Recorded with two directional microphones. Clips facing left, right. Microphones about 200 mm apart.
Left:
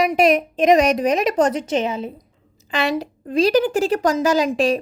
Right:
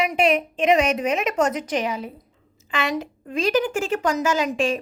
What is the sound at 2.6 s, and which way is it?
A woman's voice, 35° left (ahead or behind).